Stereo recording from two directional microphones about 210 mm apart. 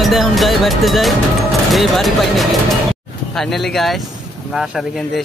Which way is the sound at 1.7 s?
Centre (ahead or behind).